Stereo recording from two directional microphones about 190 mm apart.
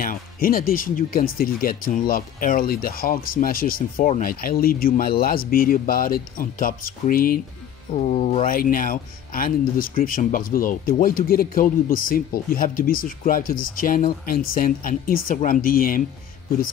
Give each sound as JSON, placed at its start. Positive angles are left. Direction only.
{"t": 0.0, "sound": "speech", "side_deg": 50}
{"t": 7.9, "sound": "speech", "side_deg": 35}
{"t": 8.5, "sound": "speech", "side_deg": 45}